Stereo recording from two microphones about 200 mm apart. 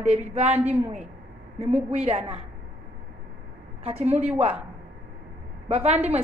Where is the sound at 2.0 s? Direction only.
30° right (ahead or behind).